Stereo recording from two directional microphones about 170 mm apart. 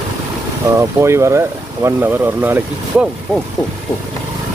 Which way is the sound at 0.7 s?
15° right (ahead or behind).